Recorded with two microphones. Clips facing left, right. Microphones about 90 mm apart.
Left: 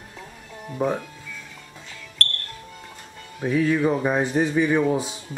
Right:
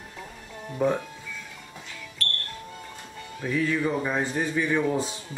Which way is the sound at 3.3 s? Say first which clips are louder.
Left 5 dB; 20° left (ahead or behind).